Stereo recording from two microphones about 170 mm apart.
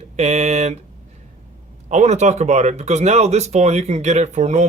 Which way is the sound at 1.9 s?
45° right (ahead or behind).